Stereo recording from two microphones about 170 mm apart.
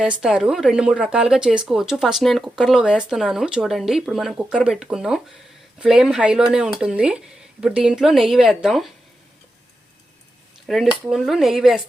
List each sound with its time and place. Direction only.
0.0 s speech: 5° right (ahead or behind)
10.7 s speech: centre (ahead or behind)